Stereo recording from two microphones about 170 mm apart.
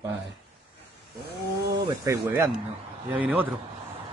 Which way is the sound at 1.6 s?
20° right (ahead or behind).